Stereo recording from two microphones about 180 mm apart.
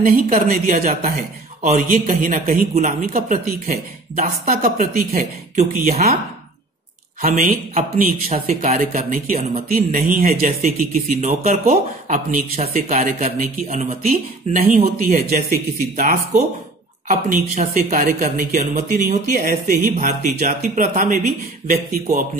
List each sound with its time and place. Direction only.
0.0 s speech: 55° right (ahead or behind)
0.7 s speech: 40° right (ahead or behind)
4.6 s speech: 55° right (ahead or behind)
5.6 s speech: 40° right (ahead or behind)
7.2 s speech: 40° right (ahead or behind)